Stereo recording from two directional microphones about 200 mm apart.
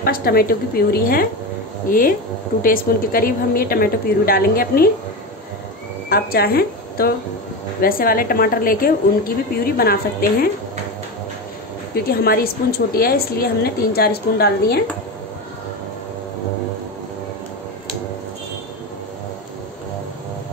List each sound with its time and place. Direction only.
0.0 s a woman's voice: 50° left (ahead or behind)
6.0 s a woman's voice: 50° left (ahead or behind)
11.9 s a woman's voice: 50° left (ahead or behind)